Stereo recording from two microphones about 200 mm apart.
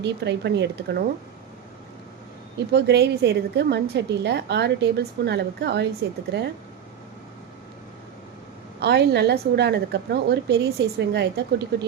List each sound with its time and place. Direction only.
0.0 s a woman's voice: 60° right (ahead or behind)
2.7 s a woman's voice: 55° right (ahead or behind)
8.8 s a woman's voice: 60° right (ahead or behind)